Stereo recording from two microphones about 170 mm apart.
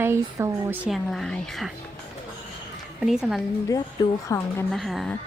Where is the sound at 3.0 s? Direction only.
5° right (ahead or behind).